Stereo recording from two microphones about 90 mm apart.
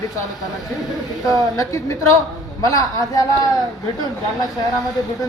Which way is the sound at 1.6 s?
35° left (ahead or behind).